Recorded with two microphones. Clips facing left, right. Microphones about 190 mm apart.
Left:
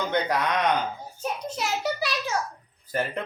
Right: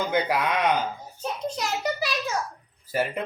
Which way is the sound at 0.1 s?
5° right (ahead or behind).